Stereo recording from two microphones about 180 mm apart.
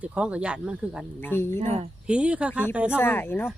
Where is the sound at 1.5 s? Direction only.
40° right (ahead or behind).